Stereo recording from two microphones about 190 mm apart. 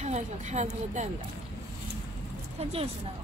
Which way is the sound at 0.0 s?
35° right (ahead or behind).